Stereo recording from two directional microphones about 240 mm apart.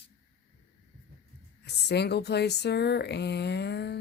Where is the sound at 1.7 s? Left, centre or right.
Left.